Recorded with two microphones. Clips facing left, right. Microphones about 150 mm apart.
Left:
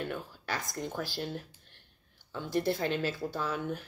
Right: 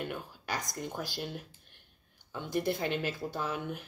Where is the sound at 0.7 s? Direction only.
15° right (ahead or behind).